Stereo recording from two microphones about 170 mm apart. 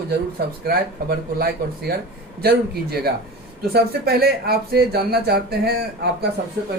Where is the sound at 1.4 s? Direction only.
65° right (ahead or behind).